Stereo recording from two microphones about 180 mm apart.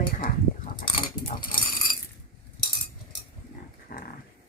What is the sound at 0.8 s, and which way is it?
Speech, 25° left (ahead or behind).